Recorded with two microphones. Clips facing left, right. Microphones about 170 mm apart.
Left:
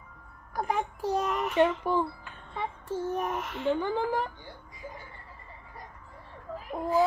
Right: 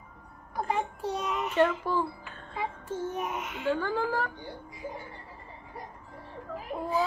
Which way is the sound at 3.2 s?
5° right (ahead or behind).